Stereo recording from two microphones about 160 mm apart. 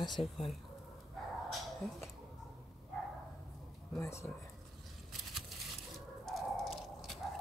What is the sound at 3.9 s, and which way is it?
Speech, 15° left (ahead or behind).